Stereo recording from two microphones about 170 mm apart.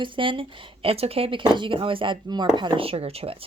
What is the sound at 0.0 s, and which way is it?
Speech, 30° right (ahead or behind).